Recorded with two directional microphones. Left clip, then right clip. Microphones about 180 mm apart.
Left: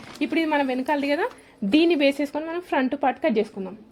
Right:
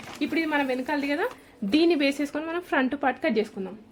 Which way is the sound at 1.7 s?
20° left (ahead or behind).